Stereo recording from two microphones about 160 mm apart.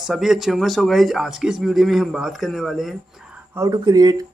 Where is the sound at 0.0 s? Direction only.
Centre (ahead or behind).